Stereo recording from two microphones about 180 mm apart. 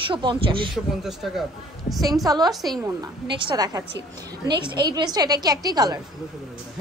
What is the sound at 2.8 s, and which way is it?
A woman's voice, 25° right (ahead or behind).